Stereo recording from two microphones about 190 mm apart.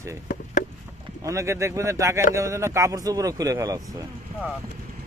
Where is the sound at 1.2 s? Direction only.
15° right (ahead or behind).